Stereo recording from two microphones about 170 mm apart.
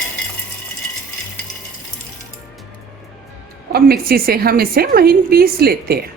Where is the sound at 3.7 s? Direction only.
65° right (ahead or behind).